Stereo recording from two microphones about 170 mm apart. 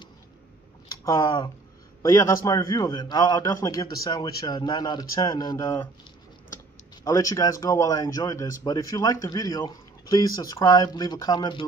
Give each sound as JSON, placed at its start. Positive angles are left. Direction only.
{"t": 1.0, "sound": "a man's voice", "side_deg": 20}
{"t": 7.1, "sound": "a man's voice", "side_deg": 20}